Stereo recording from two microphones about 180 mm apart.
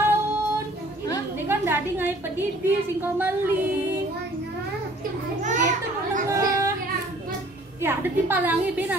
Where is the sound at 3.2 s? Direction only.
10° right (ahead or behind).